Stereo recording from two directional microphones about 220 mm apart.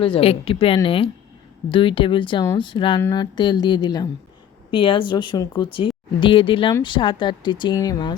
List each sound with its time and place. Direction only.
0.0 s speech: 25° left (ahead or behind)